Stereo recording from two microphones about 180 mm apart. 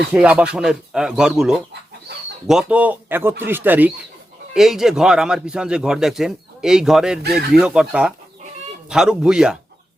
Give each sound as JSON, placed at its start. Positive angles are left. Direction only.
{"t": 0.1, "sound": "a man's voice", "side_deg": -5}
{"t": 7.2, "sound": "speech", "side_deg": -60}
{"t": 7.5, "sound": "a man's voice", "side_deg": -5}